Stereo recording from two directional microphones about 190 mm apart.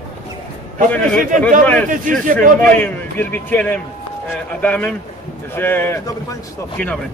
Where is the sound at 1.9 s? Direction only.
45° right (ahead or behind).